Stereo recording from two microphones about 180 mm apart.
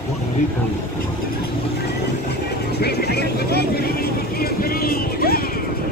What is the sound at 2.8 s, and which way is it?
Vehicle, 65° left (ahead or behind).